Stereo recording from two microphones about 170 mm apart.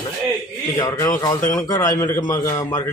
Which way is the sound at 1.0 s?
20° left (ahead or behind).